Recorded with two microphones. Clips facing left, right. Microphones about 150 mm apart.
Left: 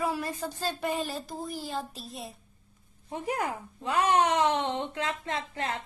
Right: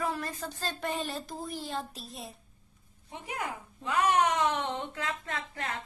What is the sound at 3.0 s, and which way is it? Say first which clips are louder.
A woman's voice: left 6 dB; 40° left (ahead or behind).